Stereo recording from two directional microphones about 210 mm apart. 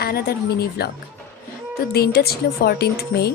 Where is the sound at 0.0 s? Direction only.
45° left (ahead or behind).